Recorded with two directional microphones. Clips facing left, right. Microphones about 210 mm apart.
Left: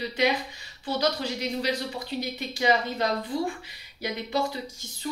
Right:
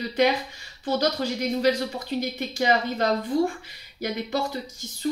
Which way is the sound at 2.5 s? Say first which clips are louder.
Even; 45° right (ahead or behind).